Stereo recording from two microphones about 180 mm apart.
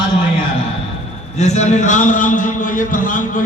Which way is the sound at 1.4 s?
40° left (ahead or behind).